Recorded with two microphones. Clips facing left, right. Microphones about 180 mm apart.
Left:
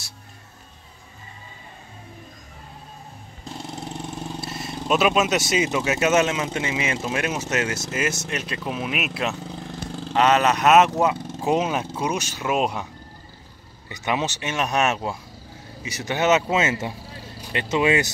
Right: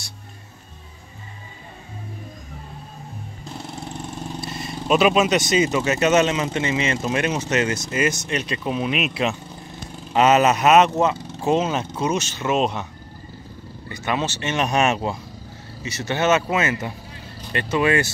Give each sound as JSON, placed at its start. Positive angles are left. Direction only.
{"t": 4.4, "sound": "speech", "side_deg": 5}
{"t": 13.8, "sound": "speech", "side_deg": 20}
{"t": 14.5, "sound": "speech", "side_deg": 0}
{"t": 15.8, "sound": "speech", "side_deg": 10}